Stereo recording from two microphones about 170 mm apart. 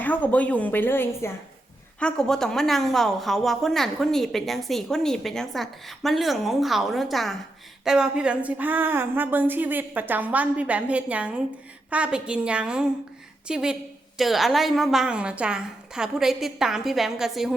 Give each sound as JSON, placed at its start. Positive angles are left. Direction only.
{"t": 0.0, "sound": "a woman's voice", "side_deg": 10}